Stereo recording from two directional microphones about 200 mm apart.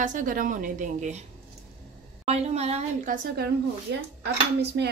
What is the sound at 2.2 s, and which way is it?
A woman's voice, 30° right (ahead or behind).